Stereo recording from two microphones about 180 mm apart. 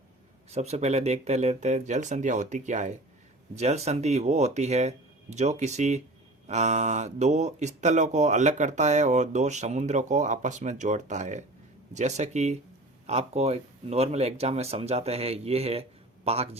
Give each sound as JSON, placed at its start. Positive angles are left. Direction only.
{"t": 0.5, "sound": "speech", "side_deg": -35}